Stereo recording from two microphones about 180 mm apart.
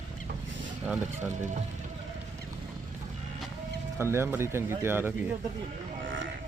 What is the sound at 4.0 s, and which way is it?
Speech, 15° right (ahead or behind).